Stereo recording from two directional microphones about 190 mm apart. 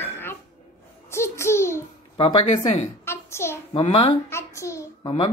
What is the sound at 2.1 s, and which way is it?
Speech, 30° left (ahead or behind).